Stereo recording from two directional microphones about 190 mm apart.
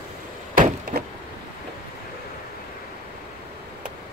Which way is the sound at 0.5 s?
45° right (ahead or behind).